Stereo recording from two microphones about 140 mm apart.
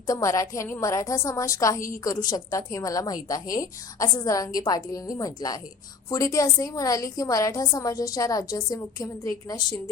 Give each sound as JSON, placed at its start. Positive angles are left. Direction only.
{"t": 0.1, "sound": "a woman's voice", "side_deg": 25}